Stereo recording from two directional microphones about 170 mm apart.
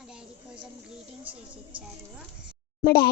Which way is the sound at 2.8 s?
65° left (ahead or behind).